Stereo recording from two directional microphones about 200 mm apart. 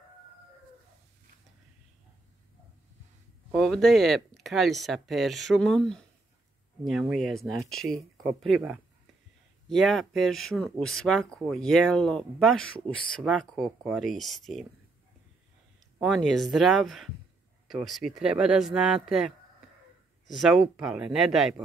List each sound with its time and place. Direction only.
3.5 s speech: centre (ahead or behind)
16.0 s speech: centre (ahead or behind)